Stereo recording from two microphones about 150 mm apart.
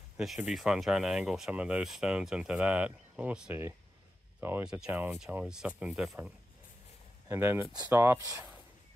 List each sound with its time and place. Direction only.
0.2 s speech: centre (ahead or behind); by 8.5 s 20° right (ahead or behind)